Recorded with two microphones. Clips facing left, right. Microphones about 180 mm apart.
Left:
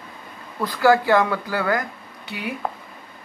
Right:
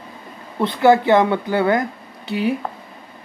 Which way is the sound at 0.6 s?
25° right (ahead or behind).